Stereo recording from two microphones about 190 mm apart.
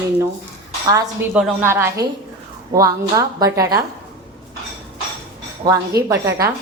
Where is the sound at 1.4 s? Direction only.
10° right (ahead or behind).